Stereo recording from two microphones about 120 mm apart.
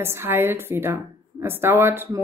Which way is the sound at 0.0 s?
20° right (ahead or behind).